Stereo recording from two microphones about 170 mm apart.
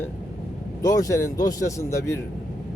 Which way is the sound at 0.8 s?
20° left (ahead or behind).